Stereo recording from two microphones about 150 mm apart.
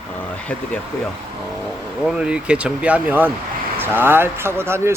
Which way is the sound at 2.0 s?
5° right (ahead or behind).